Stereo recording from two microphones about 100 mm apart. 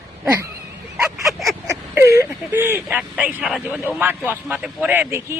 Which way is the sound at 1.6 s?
30° right (ahead or behind).